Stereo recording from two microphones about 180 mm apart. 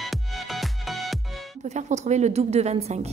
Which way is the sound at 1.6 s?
40° right (ahead or behind).